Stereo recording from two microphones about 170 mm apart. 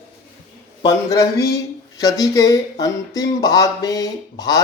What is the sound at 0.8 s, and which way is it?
Speech, 20° left (ahead or behind).